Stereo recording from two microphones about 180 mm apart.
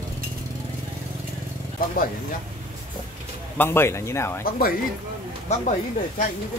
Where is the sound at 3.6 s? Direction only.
15° left (ahead or behind).